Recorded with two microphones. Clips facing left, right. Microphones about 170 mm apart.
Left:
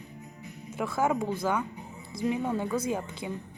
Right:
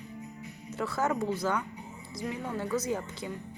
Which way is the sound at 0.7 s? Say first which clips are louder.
Left 2 dB; 10° left (ahead or behind).